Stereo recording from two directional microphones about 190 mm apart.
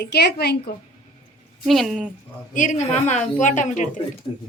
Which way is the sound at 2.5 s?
40° left (ahead or behind).